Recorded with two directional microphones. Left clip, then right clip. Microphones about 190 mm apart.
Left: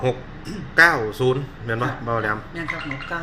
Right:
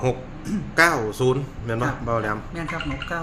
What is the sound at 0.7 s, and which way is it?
A man's voice, 5° right (ahead or behind).